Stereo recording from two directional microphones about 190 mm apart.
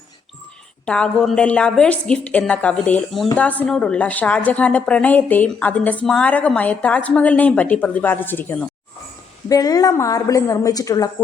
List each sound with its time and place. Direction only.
0.9 s a woman's voice: 5° left (ahead or behind)